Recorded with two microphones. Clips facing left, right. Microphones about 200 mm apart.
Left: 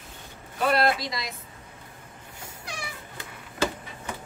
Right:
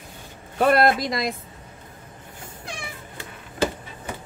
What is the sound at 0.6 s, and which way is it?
Speech, 50° right (ahead or behind).